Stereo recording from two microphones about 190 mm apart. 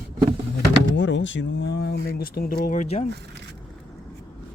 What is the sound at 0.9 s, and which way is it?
Speech, 70° left (ahead or behind).